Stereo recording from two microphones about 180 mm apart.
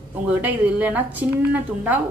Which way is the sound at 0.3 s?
10° right (ahead or behind).